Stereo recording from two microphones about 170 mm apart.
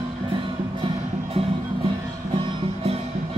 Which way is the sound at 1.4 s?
30° right (ahead or behind).